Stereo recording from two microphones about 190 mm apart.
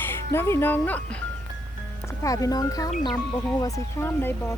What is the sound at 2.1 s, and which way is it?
Speech, 15° left (ahead or behind).